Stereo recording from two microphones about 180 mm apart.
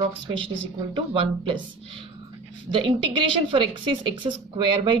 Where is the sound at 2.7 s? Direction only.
25° right (ahead or behind).